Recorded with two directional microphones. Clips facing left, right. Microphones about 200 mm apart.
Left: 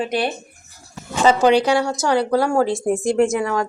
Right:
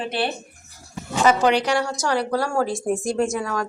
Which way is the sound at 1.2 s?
30° left (ahead or behind).